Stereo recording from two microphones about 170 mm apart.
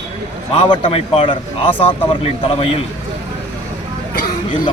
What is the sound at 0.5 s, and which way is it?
A man's voice, 35° left (ahead or behind).